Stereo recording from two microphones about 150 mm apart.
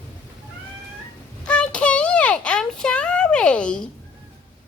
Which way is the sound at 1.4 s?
5° left (ahead or behind).